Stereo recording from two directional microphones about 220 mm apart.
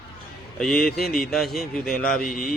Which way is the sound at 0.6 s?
Centre (ahead or behind).